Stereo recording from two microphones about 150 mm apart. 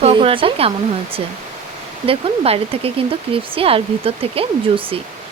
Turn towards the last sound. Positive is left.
turn(degrees=-40)  # may be behind; listen again after turning